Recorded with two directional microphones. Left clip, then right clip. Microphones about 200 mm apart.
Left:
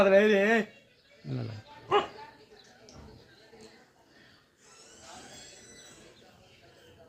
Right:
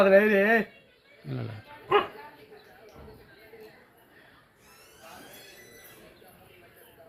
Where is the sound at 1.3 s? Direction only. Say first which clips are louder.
Right 1 dB; 5° left (ahead or behind).